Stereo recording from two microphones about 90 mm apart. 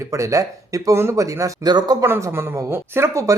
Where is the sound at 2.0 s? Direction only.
35° right (ahead or behind).